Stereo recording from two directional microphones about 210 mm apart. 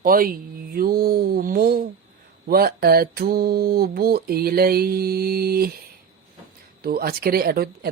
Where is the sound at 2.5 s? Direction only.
45° right (ahead or behind).